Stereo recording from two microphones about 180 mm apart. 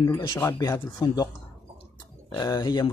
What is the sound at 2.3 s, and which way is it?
Speech, 20° left (ahead or behind).